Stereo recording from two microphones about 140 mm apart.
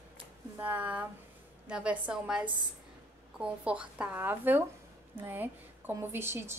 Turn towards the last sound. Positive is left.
turn(degrees=-15)  # may be behind; listen again after turning